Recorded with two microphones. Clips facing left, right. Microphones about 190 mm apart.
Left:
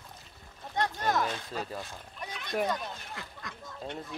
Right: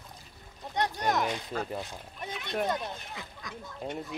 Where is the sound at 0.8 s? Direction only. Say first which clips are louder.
Right 1 dB; 15° right (ahead or behind).